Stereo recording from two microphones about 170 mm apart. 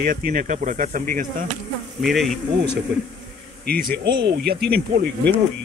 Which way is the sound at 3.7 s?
65° right (ahead or behind).